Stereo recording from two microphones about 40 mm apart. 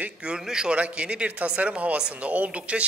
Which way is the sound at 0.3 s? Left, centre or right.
Centre.